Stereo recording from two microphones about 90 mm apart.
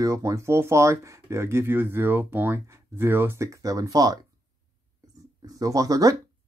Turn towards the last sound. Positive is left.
turn(degrees=-40)  # may be behind; listen again after turning